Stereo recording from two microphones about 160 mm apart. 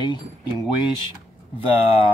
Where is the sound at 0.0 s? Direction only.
30° left (ahead or behind).